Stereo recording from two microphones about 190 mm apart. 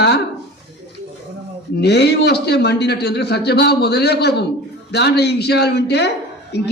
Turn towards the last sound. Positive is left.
turn(degrees=65)  # may be behind; listen again after turning